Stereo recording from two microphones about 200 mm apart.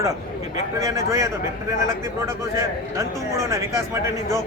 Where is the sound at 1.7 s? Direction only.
15° right (ahead or behind).